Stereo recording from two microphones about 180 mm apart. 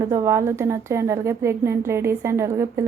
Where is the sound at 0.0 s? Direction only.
15° right (ahead or behind).